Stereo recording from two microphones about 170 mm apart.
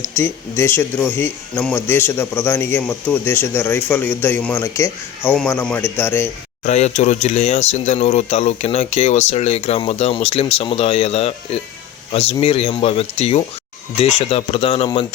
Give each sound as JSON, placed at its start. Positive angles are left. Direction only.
{"t": 0.0, "sound": "speech", "side_deg": 15}
{"t": 6.7, "sound": "speech", "side_deg": 40}